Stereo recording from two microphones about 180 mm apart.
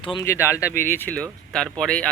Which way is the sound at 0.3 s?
15° left (ahead or behind).